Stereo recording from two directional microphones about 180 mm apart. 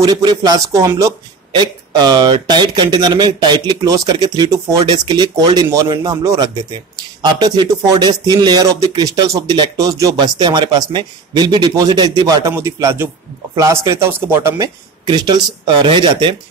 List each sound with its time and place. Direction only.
0.0 s speech: 20° right (ahead or behind)